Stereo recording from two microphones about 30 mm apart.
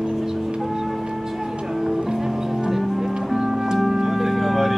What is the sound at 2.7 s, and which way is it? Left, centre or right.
Music, centre.